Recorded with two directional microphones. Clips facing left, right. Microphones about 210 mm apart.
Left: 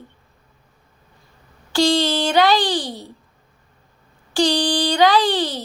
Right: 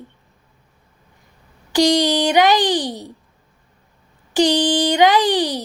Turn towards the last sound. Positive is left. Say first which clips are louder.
# right 2 dB
turn(degrees=-15)  # may be behind; listen again after turning